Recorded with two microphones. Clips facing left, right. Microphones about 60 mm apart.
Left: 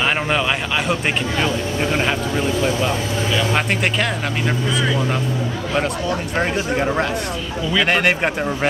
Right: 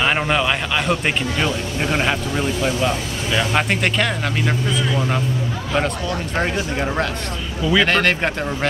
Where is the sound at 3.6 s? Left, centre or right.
Centre.